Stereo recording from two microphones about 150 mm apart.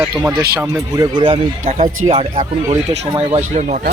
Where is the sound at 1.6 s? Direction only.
55° right (ahead or behind).